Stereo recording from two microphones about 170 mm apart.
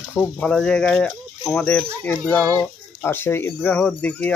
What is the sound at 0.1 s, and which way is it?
Speech, 10° left (ahead or behind).